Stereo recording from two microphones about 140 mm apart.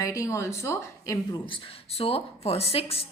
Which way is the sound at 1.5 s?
40° left (ahead or behind).